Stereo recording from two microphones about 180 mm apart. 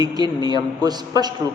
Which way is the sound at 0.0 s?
20° right (ahead or behind).